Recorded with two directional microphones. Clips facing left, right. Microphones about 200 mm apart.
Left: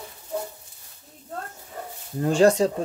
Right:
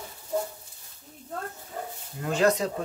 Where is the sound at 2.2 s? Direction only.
30° left (ahead or behind).